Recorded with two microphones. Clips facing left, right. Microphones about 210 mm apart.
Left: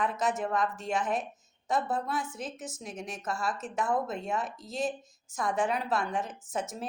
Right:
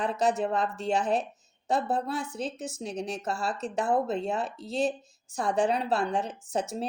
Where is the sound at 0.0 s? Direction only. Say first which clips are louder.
Right 4 dB; 30° right (ahead or behind).